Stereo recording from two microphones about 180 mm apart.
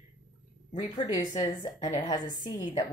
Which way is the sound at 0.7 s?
20° left (ahead or behind).